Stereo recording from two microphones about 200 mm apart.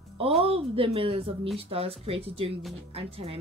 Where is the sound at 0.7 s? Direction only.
30° right (ahead or behind).